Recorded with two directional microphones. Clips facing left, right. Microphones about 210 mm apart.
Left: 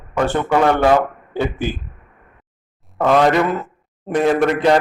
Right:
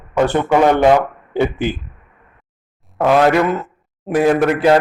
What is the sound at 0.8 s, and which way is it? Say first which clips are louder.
Speech: right 2 dB; 15° right (ahead or behind).